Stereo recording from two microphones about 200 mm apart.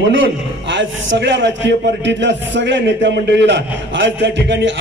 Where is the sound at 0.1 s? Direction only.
65° right (ahead or behind).